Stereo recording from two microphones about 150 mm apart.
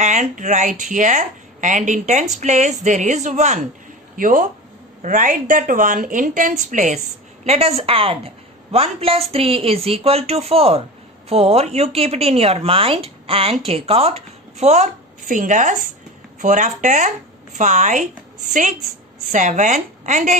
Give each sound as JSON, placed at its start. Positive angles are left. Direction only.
{"t": 0.0, "sound": "a woman's voice", "side_deg": -55}
{"t": 7.4, "sound": "a woman's voice", "side_deg": -45}
{"t": 19.3, "sound": "a woman's voice", "side_deg": -55}